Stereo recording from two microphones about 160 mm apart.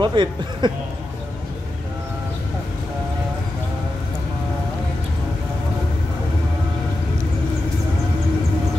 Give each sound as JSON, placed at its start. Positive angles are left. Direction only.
{"t": 0.0, "sound": "speech", "side_deg": -30}